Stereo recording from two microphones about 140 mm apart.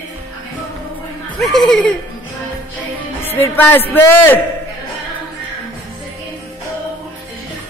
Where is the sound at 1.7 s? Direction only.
5° left (ahead or behind).